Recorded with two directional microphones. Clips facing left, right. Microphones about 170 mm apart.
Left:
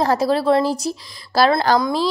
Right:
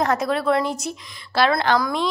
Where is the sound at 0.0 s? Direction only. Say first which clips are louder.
Left 4 dB; 30° left (ahead or behind).